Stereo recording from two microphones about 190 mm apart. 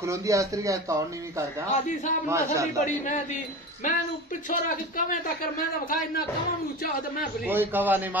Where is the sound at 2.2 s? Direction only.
15° right (ahead or behind).